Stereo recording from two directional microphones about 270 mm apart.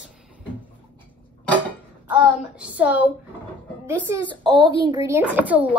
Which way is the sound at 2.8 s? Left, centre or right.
Centre.